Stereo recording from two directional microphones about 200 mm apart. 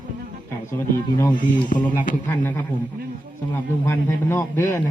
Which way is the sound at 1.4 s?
40° left (ahead or behind).